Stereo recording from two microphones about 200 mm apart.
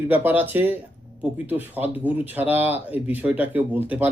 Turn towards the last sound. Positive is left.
turn(degrees=-10)  # may be behind; listen again after turning